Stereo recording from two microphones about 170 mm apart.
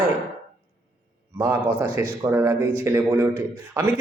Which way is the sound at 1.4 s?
15° right (ahead or behind).